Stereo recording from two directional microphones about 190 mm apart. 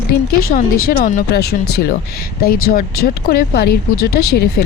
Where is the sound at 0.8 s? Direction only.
45° left (ahead or behind).